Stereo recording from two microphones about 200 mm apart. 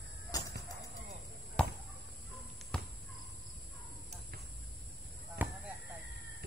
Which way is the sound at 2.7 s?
5° left (ahead or behind).